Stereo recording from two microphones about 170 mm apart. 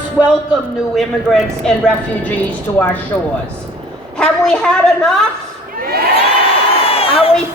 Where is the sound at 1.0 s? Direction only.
5° left (ahead or behind).